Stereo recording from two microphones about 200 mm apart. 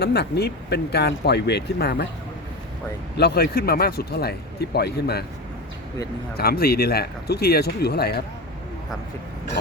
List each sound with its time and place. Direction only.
0.0 s speech: 55° left (ahead or behind)
3.2 s speech: 50° left (ahead or behind)
6.3 s speech: 50° left (ahead or behind)